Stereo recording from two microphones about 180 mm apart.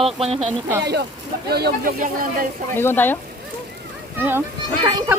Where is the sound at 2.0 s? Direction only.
50° right (ahead or behind).